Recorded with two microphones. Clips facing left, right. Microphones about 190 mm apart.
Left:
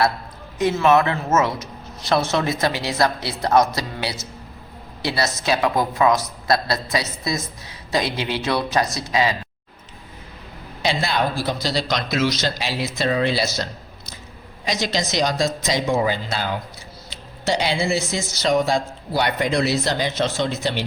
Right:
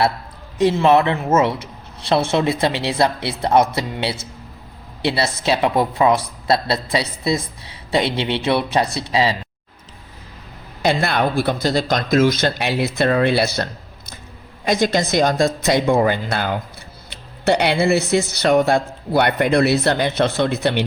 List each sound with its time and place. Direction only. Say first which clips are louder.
0.6 s a woman's voice: right 3 dB; 30° right (ahead or behind)
10.8 s speech: right 4 dB; 60° right (ahead or behind)